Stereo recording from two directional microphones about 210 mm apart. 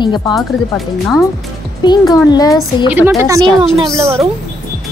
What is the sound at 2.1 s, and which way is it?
Speech, 20° left (ahead or behind).